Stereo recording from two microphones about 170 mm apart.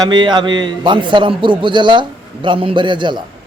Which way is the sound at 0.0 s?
25° right (ahead or behind).